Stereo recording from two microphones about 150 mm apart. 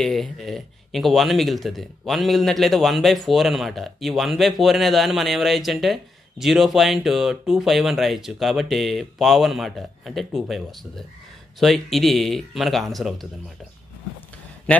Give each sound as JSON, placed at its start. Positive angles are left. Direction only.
{"t": 0.0, "sound": "speech", "side_deg": 0}